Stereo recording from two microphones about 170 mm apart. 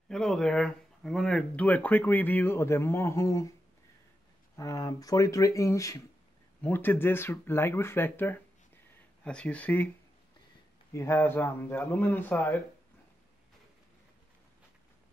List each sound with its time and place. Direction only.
0.1 s speech: 5° left (ahead or behind)
4.6 s speech: 20° left (ahead or behind)
10.9 s speech: 15° left (ahead or behind)